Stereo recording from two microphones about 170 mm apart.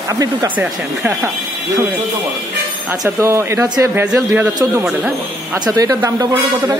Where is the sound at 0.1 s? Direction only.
20° right (ahead or behind).